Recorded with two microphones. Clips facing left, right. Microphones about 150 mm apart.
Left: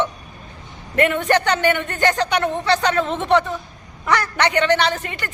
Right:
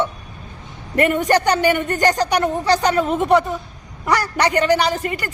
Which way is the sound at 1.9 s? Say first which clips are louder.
Right 2 dB; 40° right (ahead or behind).